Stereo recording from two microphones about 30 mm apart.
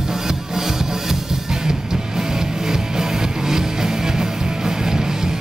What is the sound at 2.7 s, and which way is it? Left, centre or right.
Music, centre.